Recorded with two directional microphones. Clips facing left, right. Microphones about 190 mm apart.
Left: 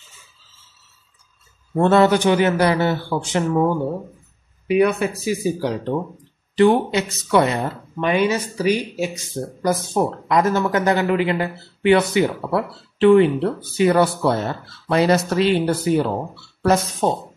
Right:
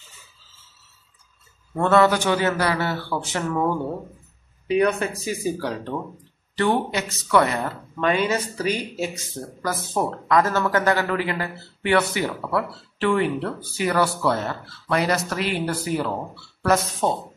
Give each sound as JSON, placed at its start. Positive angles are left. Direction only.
{"t": 1.8, "sound": "speech", "side_deg": 25}
{"t": 4.6, "sound": "speech", "side_deg": 10}